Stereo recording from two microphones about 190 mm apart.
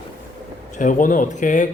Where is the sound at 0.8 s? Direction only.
45° left (ahead or behind).